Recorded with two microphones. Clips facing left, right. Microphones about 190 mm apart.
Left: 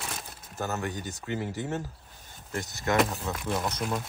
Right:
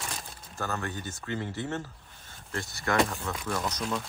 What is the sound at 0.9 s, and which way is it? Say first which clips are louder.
Speech: left 1 dB; 40° left (ahead or behind).